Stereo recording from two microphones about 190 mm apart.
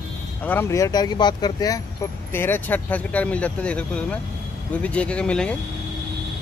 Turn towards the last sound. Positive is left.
turn(degrees=5)  # may be behind; listen again after turning